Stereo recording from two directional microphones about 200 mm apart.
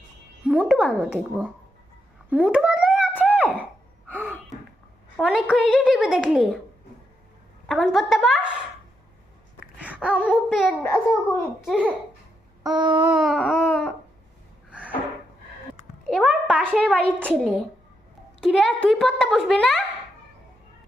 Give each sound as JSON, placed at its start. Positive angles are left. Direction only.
{"t": 0.4, "sound": "a sound", "side_deg": -5}
{"t": 0.8, "sound": "a child's voice", "side_deg": 5}
{"t": 3.2, "sound": "a sound", "side_deg": -5}
{"t": 5.2, "sound": "a child's voice", "side_deg": -5}
{"t": 7.7, "sound": "a child's voice", "side_deg": 0}
{"t": 9.8, "sound": "babbling", "side_deg": -5}
{"t": 10.8, "sound": "a child's voice", "side_deg": 15}
{"t": 11.6, "sound": "a child's voice", "side_deg": -5}
{"t": 12.7, "sound": "a sound", "side_deg": -20}
{"t": 13.1, "sound": "a child's voice", "side_deg": 0}
{"t": 14.7, "sound": "a sound", "side_deg": -5}
{"t": 16.0, "sound": "a child's voice", "side_deg": 0}